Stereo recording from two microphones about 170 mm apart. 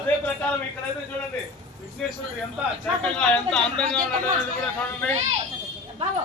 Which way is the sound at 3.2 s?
5° left (ahead or behind).